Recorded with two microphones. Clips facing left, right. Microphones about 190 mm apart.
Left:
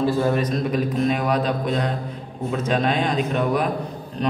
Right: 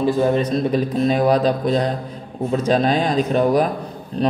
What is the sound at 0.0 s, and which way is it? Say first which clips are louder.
A man's voice: right 3 dB; 20° right (ahead or behind).